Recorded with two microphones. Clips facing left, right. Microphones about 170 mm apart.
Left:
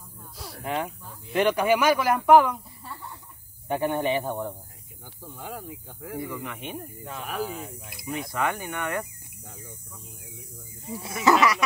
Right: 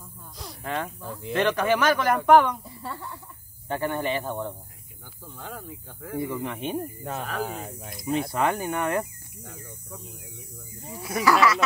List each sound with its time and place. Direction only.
0.4 s a sound: 10° left (ahead or behind)
1.0 s speech: 90° right
1.3 s speech: 10° left (ahead or behind)
2.8 s speech: 90° right
3.6 s speech: 15° left (ahead or behind)
6.1 s speech: 25° right (ahead or behind)
7.4 s speech: 55° right (ahead or behind)
8.1 s speech: 30° right (ahead or behind)
11.2 s a sound: 20° left (ahead or behind)